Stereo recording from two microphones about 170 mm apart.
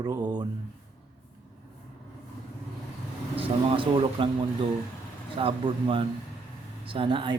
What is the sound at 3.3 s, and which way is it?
Speech, 30° right (ahead or behind).